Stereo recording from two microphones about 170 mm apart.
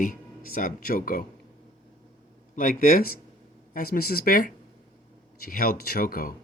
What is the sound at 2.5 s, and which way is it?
Speech, 55° left (ahead or behind).